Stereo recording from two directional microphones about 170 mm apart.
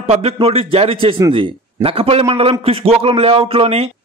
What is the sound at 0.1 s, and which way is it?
A man's voice, 35° right (ahead or behind).